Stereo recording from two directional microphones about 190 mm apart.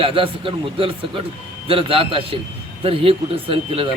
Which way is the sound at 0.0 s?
25° right (ahead or behind).